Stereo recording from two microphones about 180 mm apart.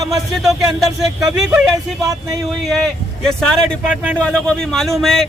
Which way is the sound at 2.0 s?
20° right (ahead or behind).